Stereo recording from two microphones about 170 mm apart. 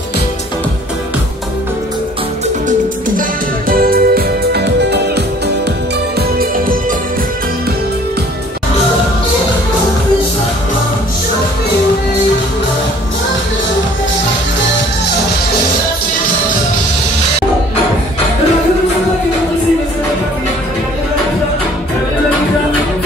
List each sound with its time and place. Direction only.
3.2 s music: 55° right (ahead or behind); by 5.2 s 75° right (ahead or behind)